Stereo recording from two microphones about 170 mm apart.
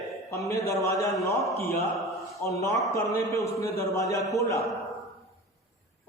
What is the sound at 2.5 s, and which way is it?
A man's voice, 20° left (ahead or behind).